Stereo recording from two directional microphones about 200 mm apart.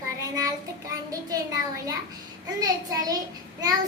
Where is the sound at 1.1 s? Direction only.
15° right (ahead or behind).